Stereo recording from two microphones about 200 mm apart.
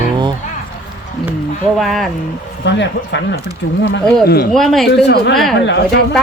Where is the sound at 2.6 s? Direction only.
60° left (ahead or behind).